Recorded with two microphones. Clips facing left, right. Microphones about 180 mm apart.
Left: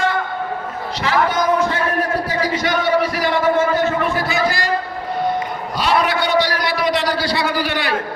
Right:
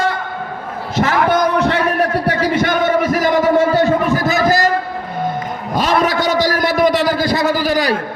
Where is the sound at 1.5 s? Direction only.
70° right (ahead or behind).